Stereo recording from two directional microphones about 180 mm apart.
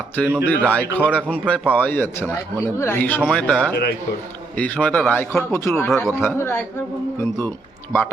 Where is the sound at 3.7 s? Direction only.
60° left (ahead or behind).